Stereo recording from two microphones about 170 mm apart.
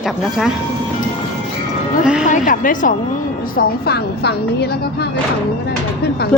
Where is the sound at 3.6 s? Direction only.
70° left (ahead or behind).